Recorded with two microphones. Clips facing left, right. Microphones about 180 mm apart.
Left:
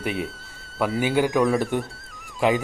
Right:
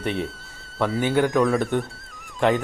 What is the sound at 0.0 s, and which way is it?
Speech, centre (ahead or behind).